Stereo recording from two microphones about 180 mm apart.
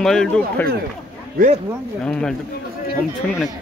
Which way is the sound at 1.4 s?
55° right (ahead or behind).